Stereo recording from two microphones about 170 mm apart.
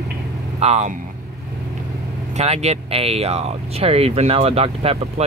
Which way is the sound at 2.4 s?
40° right (ahead or behind).